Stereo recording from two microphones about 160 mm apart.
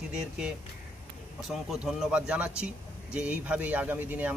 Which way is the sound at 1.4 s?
Centre (ahead or behind).